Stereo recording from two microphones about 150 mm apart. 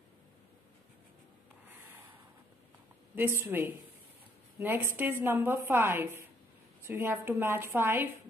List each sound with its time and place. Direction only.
3.4 s a woman's voice: 15° right (ahead or behind)